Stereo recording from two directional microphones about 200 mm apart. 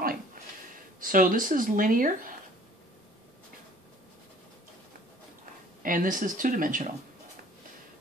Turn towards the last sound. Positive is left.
turn(degrees=-40)  # may be behind; listen again after turning